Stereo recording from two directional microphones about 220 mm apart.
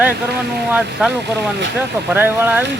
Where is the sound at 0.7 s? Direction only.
5° right (ahead or behind).